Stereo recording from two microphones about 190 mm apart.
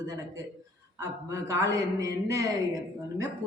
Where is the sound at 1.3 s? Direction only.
15° right (ahead or behind).